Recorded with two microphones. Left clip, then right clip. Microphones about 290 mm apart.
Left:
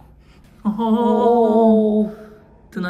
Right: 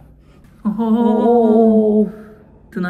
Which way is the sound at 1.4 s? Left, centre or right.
Right.